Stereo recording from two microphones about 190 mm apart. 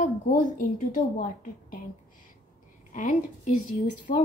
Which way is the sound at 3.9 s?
40° left (ahead or behind).